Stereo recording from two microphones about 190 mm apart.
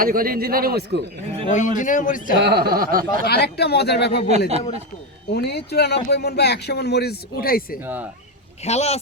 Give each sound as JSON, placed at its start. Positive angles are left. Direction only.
{"t": 0.0, "sound": "speech", "side_deg": -50}
{"t": 1.5, "sound": "a man's voice", "side_deg": 40}
{"t": 2.4, "sound": "speech", "side_deg": -60}
{"t": 3.2, "sound": "speech", "side_deg": 55}
{"t": 4.3, "sound": "speech", "side_deg": -35}
{"t": 5.3, "sound": "speech", "side_deg": 60}
{"t": 8.6, "sound": "speech", "side_deg": 35}